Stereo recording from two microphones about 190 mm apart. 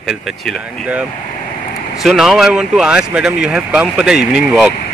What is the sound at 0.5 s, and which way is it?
Speech, 5° right (ahead or behind).